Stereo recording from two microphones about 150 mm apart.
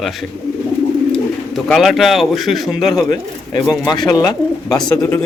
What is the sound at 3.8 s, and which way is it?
Speech, 30° left (ahead or behind).